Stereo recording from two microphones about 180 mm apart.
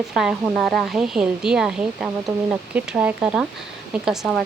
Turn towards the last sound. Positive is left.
turn(degrees=0)  # may be behind; listen again after turning